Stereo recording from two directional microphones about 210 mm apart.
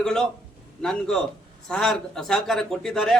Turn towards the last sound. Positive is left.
turn(degrees=0)  # may be behind; listen again after turning